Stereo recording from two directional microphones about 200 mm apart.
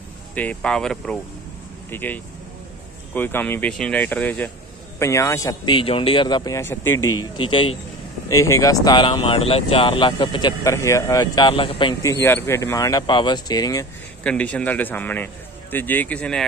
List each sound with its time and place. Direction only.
0.3 s a man's voice: 5° left (ahead or behind)
7.0 s speech: 90° left
7.3 s speech: 25° left (ahead or behind)
8.3 s speech: 15° left (ahead or behind)
12.0 s a man's voice: 15° left (ahead or behind)
14.2 s a man's voice: 5° left (ahead or behind)